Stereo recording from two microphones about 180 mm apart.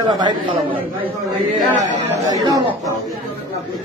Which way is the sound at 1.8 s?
20° right (ahead or behind).